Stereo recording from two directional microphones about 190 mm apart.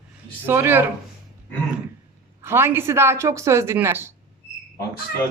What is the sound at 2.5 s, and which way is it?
A woman's voice, 10° right (ahead or behind).